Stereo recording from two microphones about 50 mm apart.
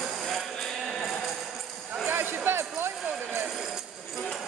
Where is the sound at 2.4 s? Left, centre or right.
Right.